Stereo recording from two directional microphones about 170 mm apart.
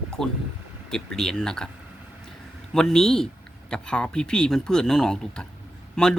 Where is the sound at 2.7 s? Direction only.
5° left (ahead or behind).